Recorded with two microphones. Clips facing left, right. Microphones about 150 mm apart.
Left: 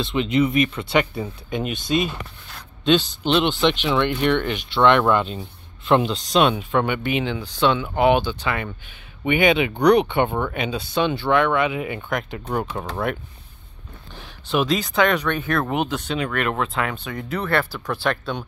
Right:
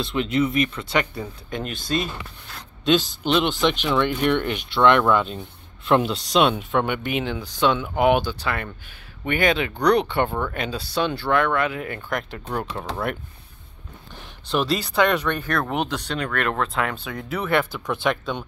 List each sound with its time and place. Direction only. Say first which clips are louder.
0.0 s speech: left 2 dB; centre (ahead or behind)
2.8 s a man's voice: left 1 dB; 10° right (ahead or behind); by 10.5 s 15° left (ahead or behind)
10.5 s speech: left 2 dB; 5° left (ahead or behind)
12.5 s speech: left 2 dB; 15° left (ahead or behind)
14.7 s speech: even; 5° right (ahead or behind)
18.1 s speech: even; 5° right (ahead or behind)